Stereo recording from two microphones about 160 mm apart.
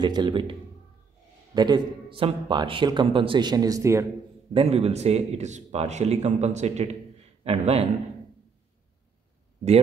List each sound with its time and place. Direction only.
0.0 s a man's voice: 25° right (ahead or behind)
4.6 s a man's voice: 40° right (ahead or behind)